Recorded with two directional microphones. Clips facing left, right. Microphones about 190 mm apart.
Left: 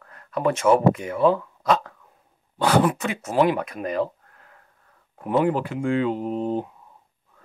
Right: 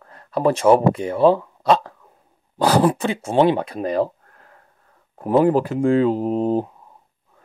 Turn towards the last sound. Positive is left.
turn(degrees=-40)  # may be behind; listen again after turning